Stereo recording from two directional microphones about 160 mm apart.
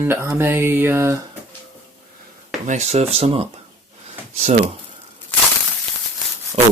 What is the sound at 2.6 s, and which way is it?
Speech, 45° right (ahead or behind).